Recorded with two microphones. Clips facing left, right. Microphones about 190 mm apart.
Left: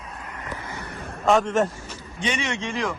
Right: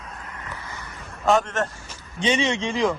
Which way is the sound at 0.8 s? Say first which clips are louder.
Left 5 dB; 60° left (ahead or behind).